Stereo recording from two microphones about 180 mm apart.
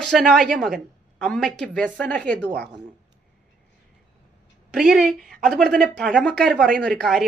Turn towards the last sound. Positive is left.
turn(degrees=0)  # may be behind; listen again after turning